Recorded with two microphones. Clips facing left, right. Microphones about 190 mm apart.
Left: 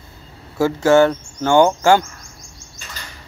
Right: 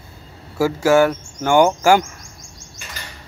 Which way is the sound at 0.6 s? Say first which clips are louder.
Left 1 dB; 10° right (ahead or behind).